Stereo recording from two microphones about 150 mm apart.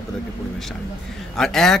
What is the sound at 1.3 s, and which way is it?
Speech, 5° left (ahead or behind).